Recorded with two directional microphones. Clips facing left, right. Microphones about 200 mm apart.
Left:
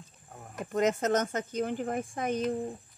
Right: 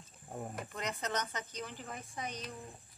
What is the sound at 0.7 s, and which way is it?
Speech, 45° left (ahead or behind).